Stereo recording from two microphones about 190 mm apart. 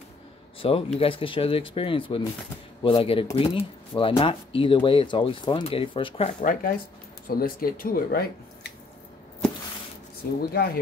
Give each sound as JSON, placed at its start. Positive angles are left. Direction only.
{"t": 0.6, "sound": "speech", "side_deg": 30}
{"t": 6.4, "sound": "speech", "side_deg": 50}
{"t": 10.4, "sound": "speech", "side_deg": 55}